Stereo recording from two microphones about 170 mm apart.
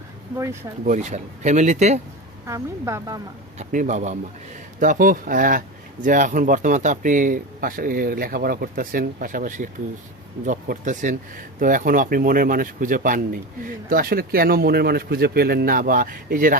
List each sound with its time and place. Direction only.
0.9 s speech: 45° right (ahead or behind)
2.5 s speech: 15° right (ahead or behind)
3.6 s speech: 50° right (ahead or behind)